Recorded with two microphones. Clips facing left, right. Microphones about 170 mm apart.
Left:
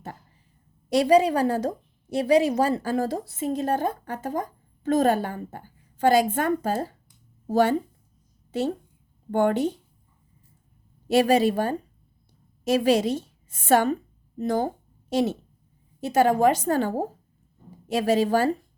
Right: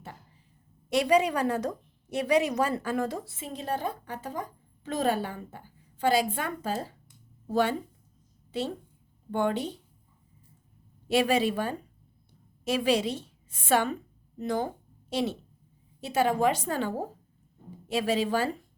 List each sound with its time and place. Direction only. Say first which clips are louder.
0.9 s a woman's voice: left 5 dB; 35° left (ahead or behind)
11.1 s a woman's voice: left 5 dB; 40° left (ahead or behind)